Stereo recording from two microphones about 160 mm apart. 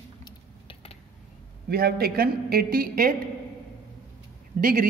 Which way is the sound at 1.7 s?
75° right (ahead or behind).